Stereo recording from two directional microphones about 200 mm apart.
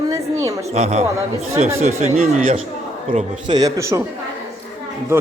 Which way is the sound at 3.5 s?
15° right (ahead or behind).